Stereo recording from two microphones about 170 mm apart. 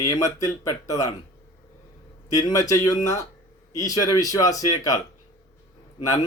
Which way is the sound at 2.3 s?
20° left (ahead or behind).